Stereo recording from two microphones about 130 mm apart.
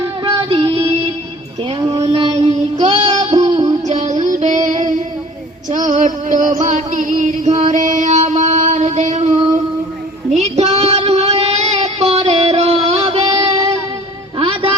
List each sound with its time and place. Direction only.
0.3 s music: 40° right (ahead or behind)
1.9 s child singing: 45° right (ahead or behind)
3.3 s music: 45° right (ahead or behind)
3.8 s child singing: 65° right (ahead or behind)
5.7 s music: 70° right (ahead or behind)
10.2 s child singing: 60° right (ahead or behind)
14.3 s music: 40° right (ahead or behind)